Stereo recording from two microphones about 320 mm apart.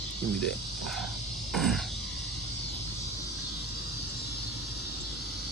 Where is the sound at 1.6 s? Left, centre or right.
Centre.